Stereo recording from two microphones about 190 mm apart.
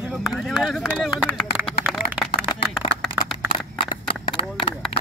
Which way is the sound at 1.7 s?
5° right (ahead or behind).